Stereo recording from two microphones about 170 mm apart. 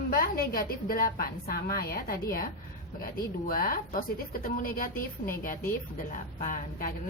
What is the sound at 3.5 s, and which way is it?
A woman's voice, 60° left (ahead or behind).